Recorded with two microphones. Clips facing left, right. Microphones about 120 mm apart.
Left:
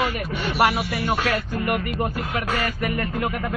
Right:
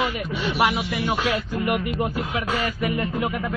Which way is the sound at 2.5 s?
50° left (ahead or behind).